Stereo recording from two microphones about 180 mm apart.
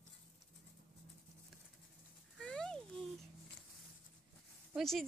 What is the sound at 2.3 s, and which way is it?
Music, 5° left (ahead or behind).